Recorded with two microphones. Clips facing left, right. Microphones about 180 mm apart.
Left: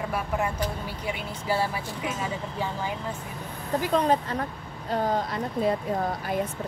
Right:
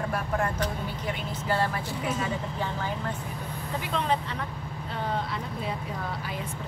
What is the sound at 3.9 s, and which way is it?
Speech, 45° left (ahead or behind).